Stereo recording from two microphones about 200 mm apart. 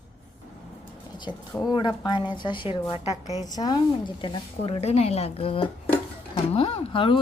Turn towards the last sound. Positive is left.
turn(degrees=25)  # may be behind; listen again after turning